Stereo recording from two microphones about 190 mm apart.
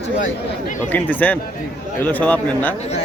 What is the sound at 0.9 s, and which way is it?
Speech, 10° left (ahead or behind).